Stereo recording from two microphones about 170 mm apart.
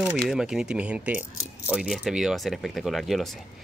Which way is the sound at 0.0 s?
5° right (ahead or behind).